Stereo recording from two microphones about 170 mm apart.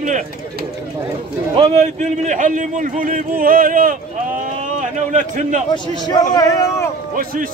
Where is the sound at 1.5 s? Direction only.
35° right (ahead or behind); by 3.9 s 55° right (ahead or behind).